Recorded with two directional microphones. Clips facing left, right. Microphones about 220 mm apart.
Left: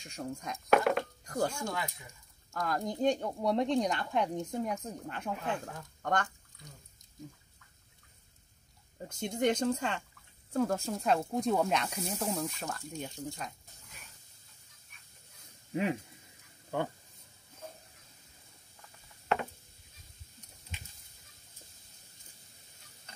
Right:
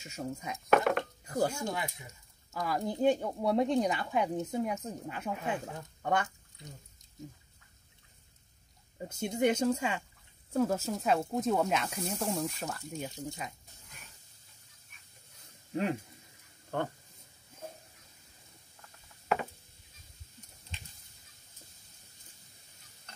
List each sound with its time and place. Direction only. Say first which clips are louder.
0.0 s speech: right 1 dB; 5° right (ahead or behind)
1.6 s speech: right 1 dB; 20° right (ahead or behind)
2.5 s speech: right 1 dB; 5° right (ahead or behind)
8.9 s speech: right 2 dB; 5° right (ahead or behind)
13.4 s a sound: right 1 dB; centre (ahead or behind)
15.7 s speech: even; 5° left (ahead or behind)
19.2 s a sound: even; centre (ahead or behind)